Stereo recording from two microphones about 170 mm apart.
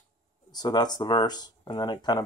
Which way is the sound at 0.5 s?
25° left (ahead or behind).